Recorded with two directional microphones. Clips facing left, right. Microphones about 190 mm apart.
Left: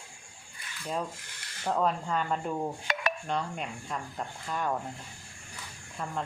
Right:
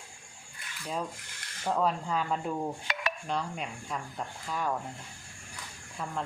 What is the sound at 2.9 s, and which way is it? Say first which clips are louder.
Dishes: left 3 dB; 50° left (ahead or behind).